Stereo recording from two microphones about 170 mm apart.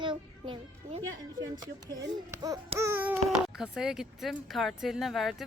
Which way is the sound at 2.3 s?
20° right (ahead or behind).